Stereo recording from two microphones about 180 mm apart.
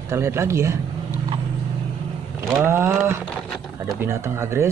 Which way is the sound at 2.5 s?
15° right (ahead or behind).